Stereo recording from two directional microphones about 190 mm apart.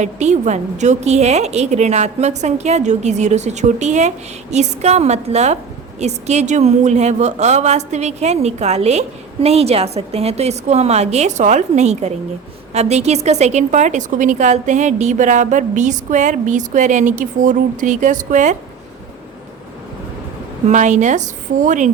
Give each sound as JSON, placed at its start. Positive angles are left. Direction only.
{"t": 0.0, "sound": "a woman's voice", "side_deg": -40}
{"t": 20.7, "sound": "a woman's voice", "side_deg": -40}